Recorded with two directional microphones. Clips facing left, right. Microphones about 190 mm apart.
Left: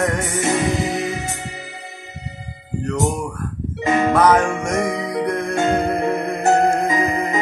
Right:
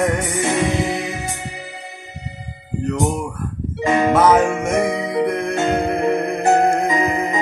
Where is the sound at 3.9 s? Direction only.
25° right (ahead or behind).